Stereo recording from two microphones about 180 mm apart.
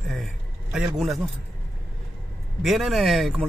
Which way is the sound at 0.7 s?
Centre (ahead or behind).